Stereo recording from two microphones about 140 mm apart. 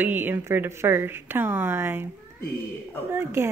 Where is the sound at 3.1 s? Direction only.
20° right (ahead or behind).